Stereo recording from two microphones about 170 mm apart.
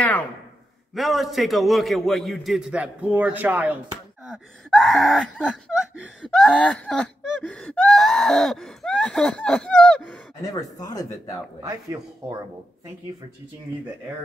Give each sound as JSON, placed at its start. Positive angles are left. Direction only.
{"t": 0.9, "sound": "speech", "side_deg": 0}
{"t": 4.3, "sound": "speech", "side_deg": 0}
{"t": 10.5, "sound": "speech", "side_deg": 20}
{"t": 11.6, "sound": "speech", "side_deg": -20}